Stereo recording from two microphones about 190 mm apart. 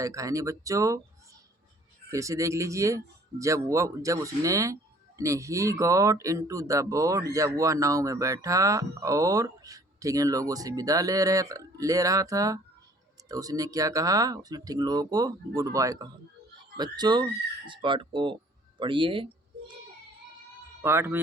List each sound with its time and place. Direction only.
0.0 s speech: 15° right (ahead or behind)
2.0 s speech: 15° right (ahead or behind)
20.8 s speech: 10° right (ahead or behind)